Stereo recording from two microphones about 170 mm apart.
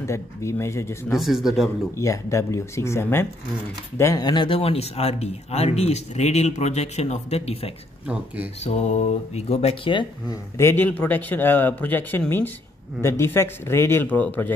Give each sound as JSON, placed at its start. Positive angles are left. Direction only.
{"t": 0.0, "sound": "speech", "side_deg": 15}
{"t": 1.1, "sound": "speech", "side_deg": 0}
{"t": 2.0, "sound": "speech", "side_deg": 15}
{"t": 10.6, "sound": "speech", "side_deg": 10}